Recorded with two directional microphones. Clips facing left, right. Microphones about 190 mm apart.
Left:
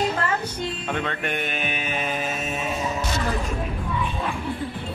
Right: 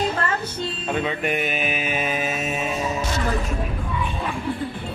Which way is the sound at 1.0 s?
5° right (ahead or behind).